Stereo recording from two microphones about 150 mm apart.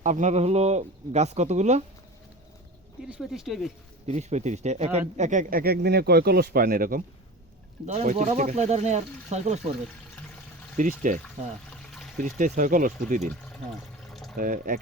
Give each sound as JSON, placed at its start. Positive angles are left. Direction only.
{"t": 0.0, "sound": "speech", "side_deg": -55}
{"t": 3.1, "sound": "speech", "side_deg": -5}
{"t": 4.0, "sound": "speech", "side_deg": -50}
{"t": 7.9, "sound": "speech", "side_deg": -50}
{"t": 10.8, "sound": "speech", "side_deg": -60}
{"t": 11.9, "sound": "pour", "side_deg": 0}
{"t": 12.4, "sound": "speech", "side_deg": -60}
{"t": 14.1, "sound": "water", "side_deg": 0}
{"t": 14.3, "sound": "speech", "side_deg": -65}